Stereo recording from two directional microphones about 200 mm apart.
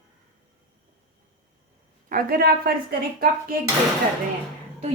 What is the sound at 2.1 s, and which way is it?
Speech, 50° right (ahead or behind).